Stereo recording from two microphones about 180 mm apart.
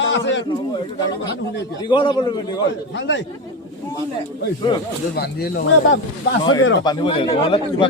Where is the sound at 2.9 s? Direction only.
90° left.